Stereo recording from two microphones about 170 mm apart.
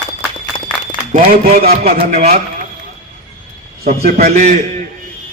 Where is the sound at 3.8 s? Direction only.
65° right (ahead or behind); by 4.6 s 45° right (ahead or behind).